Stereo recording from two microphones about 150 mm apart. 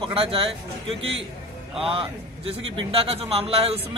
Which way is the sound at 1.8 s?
40° right (ahead or behind).